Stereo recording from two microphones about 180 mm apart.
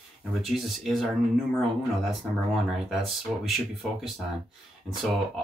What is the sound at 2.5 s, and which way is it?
Speech, centre (ahead or behind).